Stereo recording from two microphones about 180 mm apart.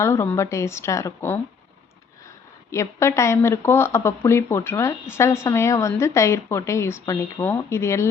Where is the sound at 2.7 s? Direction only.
15° left (ahead or behind).